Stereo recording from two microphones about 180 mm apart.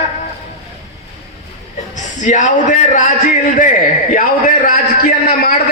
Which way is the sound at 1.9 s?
40° left (ahead or behind).